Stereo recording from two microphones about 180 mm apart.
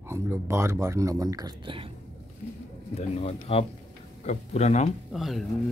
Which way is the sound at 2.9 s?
35° left (ahead or behind).